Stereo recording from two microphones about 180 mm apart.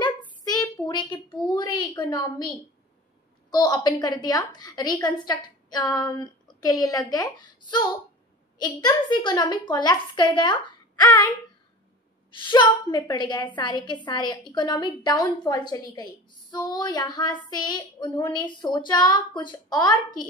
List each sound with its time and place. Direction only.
0.5 s a sound: 20° left (ahead or behind)
3.4 s a woman's voice: 25° left (ahead or behind)
12.4 s a woman's voice: 25° left (ahead or behind)